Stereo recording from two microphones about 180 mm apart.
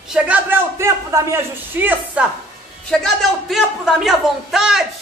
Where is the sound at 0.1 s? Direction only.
10° right (ahead or behind).